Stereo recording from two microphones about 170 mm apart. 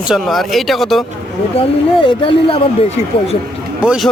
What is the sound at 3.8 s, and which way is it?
Speech, 5° right (ahead or behind).